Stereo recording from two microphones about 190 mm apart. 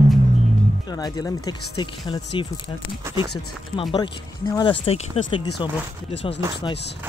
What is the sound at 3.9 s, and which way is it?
Speech, 20° left (ahead or behind).